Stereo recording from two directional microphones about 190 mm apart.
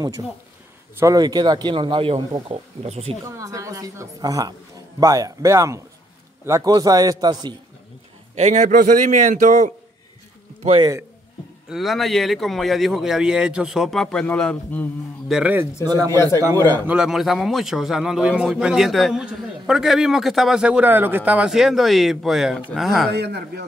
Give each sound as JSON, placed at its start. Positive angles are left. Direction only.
{"t": 0.9, "sound": "a man's voice", "side_deg": -20}
{"t": 3.3, "sound": "a woman's voice", "side_deg": -15}
{"t": 8.4, "sound": "a man's voice", "side_deg": -40}
{"t": 11.7, "sound": "a man's voice", "side_deg": 0}
{"t": 15.3, "sound": "a woman's voice", "side_deg": -5}
{"t": 15.8, "sound": "a man's voice", "side_deg": -20}
{"t": 16.5, "sound": "a man's voice", "side_deg": 10}
{"t": 16.8, "sound": "a man's voice", "side_deg": -5}
{"t": 23.1, "sound": "speech", "side_deg": -60}